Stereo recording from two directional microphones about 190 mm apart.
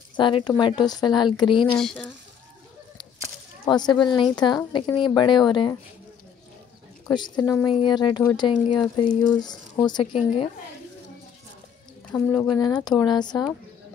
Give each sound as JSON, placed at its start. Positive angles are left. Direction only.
{"t": 0.1, "sound": "speech", "side_deg": 25}
{"t": 1.8, "sound": "speech", "side_deg": 5}
{"t": 3.6, "sound": "speech", "side_deg": 20}
{"t": 7.2, "sound": "speech", "side_deg": 20}
{"t": 12.1, "sound": "speech", "side_deg": 10}
{"t": 12.4, "sound": "speech", "side_deg": 20}